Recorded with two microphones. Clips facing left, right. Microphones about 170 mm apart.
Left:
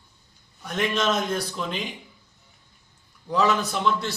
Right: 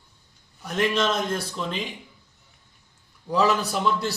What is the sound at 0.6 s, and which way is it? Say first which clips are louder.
A man's voice: right 1 dB; centre (ahead or behind).